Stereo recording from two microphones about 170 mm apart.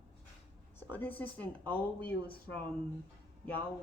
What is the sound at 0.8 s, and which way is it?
Speech, 10° left (ahead or behind).